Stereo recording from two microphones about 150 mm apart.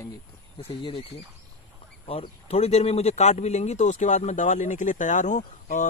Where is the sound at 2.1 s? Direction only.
40° left (ahead or behind).